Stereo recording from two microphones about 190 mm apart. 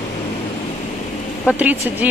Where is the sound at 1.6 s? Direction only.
10° right (ahead or behind).